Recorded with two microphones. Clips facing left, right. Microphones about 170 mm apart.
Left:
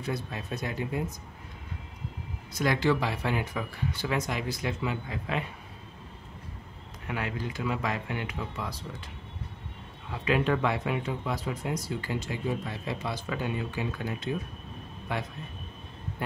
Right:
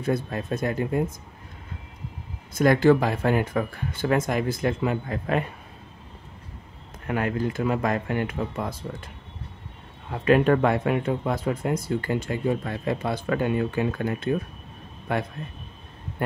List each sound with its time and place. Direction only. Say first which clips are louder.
0.0 s speech: right 8 dB; 50° right (ahead or behind)
2.5 s speech: right 8 dB; 50° right (ahead or behind)
7.1 s speech: right 8 dB; 50° right (ahead or behind)
10.1 s speech: right 8 dB; 50° right (ahead or behind)